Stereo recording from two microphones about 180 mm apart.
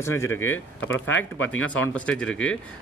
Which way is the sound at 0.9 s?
90° left.